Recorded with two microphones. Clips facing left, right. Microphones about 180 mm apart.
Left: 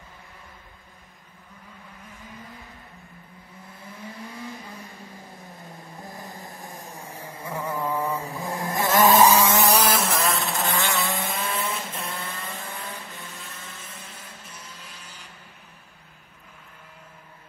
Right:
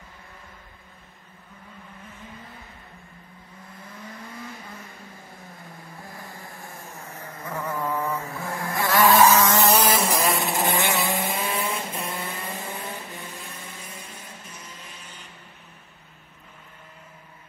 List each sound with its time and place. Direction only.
5.9 s a sound: 20° left (ahead or behind)
9.6 s vehicle: 5° right (ahead or behind)
10.4 s vehicle: 20° right (ahead or behind)
11.2 s vehicle: centre (ahead or behind)
12.2 s vehicle: 15° right (ahead or behind)